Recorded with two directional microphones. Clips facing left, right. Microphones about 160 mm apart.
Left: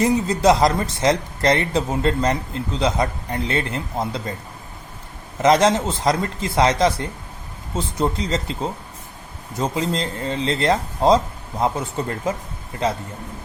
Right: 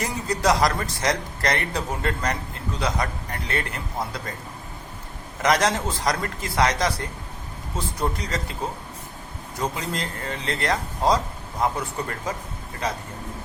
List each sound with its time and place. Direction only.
0.0 s speech: 25° left (ahead or behind)
5.4 s speech: 25° left (ahead or behind)
9.6 s speech: 25° left (ahead or behind)